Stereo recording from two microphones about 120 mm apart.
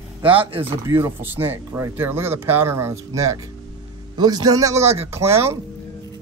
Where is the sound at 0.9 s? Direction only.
20° right (ahead or behind).